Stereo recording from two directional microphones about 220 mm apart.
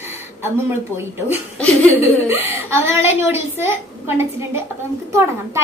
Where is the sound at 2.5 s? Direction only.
10° right (ahead or behind).